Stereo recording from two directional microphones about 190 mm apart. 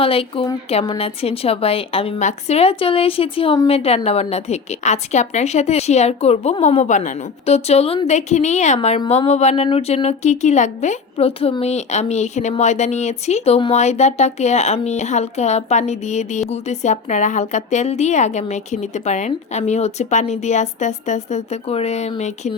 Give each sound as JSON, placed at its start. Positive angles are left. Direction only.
{"t": 0.0, "sound": "speech", "side_deg": 30}